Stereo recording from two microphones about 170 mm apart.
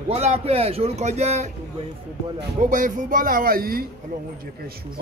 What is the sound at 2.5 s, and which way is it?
Speech, 50° right (ahead or behind).